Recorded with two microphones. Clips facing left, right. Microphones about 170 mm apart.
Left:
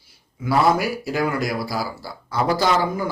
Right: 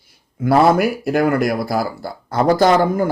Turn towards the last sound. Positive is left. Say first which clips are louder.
# right 7 dB
turn(degrees=-55)  # may be behind; listen again after turning